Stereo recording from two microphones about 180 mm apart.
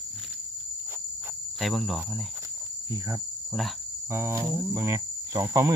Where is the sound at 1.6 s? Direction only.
Centre (ahead or behind).